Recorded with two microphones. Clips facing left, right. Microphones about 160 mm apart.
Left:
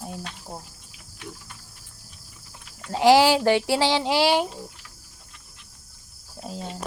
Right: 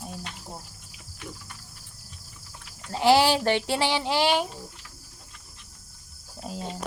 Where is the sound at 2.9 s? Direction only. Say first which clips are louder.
Left 3 dB; 15° left (ahead or behind).